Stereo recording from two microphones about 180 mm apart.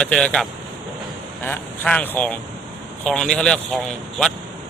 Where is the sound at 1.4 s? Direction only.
10° left (ahead or behind).